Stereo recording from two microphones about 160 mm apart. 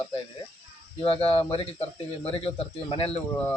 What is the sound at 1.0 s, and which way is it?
Speech, 35° left (ahead or behind).